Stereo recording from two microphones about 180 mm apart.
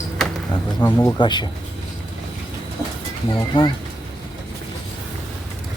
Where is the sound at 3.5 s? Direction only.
25° left (ahead or behind).